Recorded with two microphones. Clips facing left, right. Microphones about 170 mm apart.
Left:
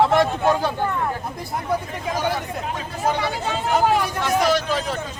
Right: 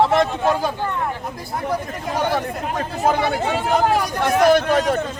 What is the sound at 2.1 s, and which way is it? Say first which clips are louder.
Speech: right 4 dB; 55° right (ahead or behind).